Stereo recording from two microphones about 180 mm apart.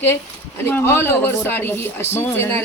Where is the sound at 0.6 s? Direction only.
10° left (ahead or behind).